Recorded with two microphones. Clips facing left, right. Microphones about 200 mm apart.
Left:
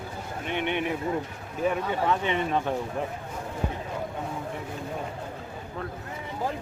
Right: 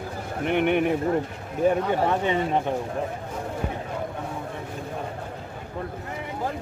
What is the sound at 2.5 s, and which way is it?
Speech, 25° right (ahead or behind).